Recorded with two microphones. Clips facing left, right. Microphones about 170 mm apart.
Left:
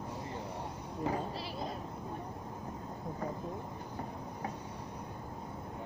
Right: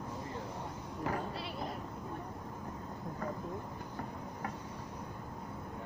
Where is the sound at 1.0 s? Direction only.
20° left (ahead or behind).